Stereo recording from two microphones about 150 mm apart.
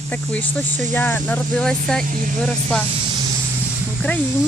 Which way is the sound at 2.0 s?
60° right (ahead or behind).